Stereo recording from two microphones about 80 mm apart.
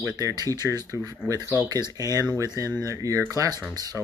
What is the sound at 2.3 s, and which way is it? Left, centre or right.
Speech, left.